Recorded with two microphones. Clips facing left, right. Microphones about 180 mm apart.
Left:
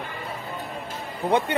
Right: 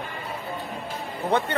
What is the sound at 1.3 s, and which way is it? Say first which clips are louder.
Speech: left 2 dB; 15° left (ahead or behind).